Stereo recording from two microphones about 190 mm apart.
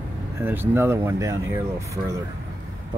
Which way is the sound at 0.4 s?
10° right (ahead or behind).